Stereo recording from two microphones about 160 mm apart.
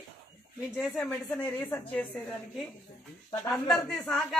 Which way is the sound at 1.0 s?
10° left (ahead or behind).